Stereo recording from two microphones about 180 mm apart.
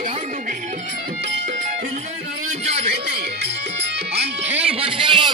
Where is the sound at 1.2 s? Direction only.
80° right.